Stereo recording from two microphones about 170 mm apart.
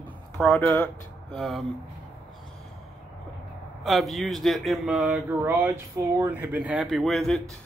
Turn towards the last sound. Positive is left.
turn(degrees=0)  # may be behind; listen again after turning